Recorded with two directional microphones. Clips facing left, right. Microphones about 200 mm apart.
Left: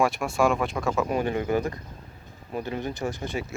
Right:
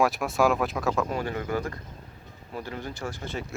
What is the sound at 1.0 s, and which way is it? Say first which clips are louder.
Speech: left 4 dB; 20° left (ahead or behind).